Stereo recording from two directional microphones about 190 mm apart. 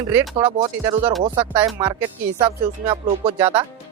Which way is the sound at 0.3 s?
25° right (ahead or behind).